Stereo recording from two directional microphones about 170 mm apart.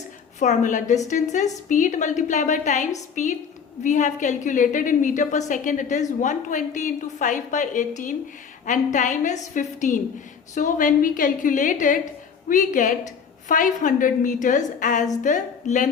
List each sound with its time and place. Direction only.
0.3 s a woman's voice: 45° left (ahead or behind)